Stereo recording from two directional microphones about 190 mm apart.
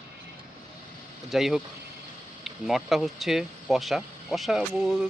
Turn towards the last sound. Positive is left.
turn(degrees=0)  # may be behind; listen again after turning